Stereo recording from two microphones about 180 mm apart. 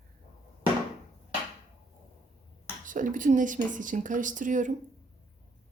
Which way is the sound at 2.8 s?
45° right (ahead or behind).